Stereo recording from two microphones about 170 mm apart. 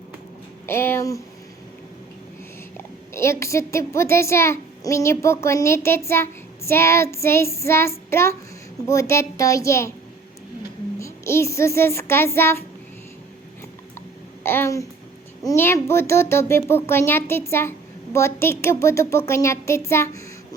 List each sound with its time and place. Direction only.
0.7 s a child's voice: 15° left (ahead or behind)
2.7 s a child's voice: 15° left (ahead or behind)
11.0 s speech: 15° left (ahead or behind)
14.4 s a child's voice: 15° left (ahead or behind)